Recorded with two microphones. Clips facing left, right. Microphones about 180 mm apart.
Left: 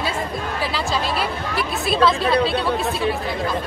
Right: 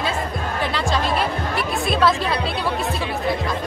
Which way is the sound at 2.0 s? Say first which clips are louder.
Left 3 dB; centre (ahead or behind).